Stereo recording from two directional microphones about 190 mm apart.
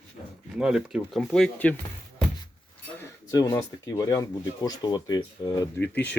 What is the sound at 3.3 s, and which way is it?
Speech, 20° left (ahead or behind).